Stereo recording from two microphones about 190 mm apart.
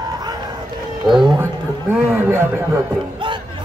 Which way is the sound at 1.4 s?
15° right (ahead or behind).